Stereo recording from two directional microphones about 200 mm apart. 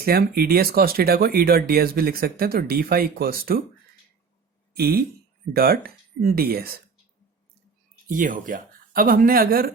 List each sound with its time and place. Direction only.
0.0 s speech: 50° right (ahead or behind)
4.8 s speech: 50° right (ahead or behind)
8.1 s speech: 40° right (ahead or behind)